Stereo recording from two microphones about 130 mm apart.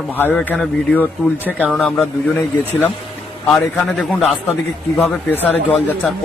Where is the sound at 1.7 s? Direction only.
Centre (ahead or behind).